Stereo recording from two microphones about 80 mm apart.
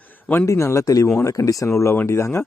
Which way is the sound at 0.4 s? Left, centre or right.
Left.